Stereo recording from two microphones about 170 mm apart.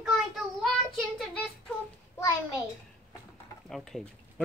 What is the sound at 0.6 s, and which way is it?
Child singing, centre (ahead or behind).